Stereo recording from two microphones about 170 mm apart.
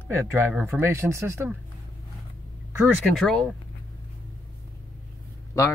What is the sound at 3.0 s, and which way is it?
Speech, centre (ahead or behind).